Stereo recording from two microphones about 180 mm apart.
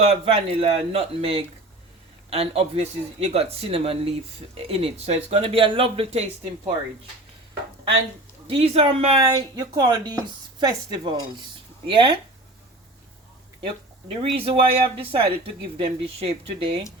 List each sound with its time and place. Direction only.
0.0 s speech: 35° right (ahead or behind)
8.4 s speech: 30° right (ahead or behind)
9.3 s speech: 25° right (ahead or behind)
14.2 s speech: 35° right (ahead or behind)